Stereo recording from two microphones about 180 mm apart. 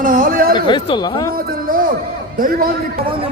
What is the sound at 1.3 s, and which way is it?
A man's voice, 50° right (ahead or behind).